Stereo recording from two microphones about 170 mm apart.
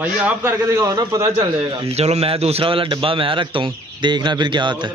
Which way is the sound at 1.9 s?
40° right (ahead or behind).